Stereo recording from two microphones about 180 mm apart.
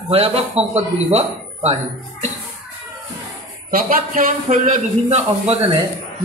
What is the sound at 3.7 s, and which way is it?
A man's voice, 50° right (ahead or behind).